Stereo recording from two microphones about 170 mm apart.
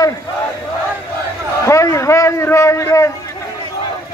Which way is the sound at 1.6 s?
20° left (ahead or behind).